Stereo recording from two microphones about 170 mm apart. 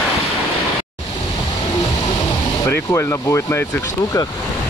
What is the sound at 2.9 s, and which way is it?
Speech, 15° left (ahead or behind).